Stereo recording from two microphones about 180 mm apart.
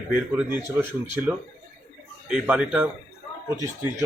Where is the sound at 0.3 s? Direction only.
10° right (ahead or behind).